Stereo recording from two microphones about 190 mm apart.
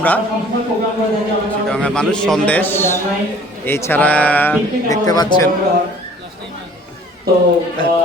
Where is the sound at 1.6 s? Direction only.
5° left (ahead or behind).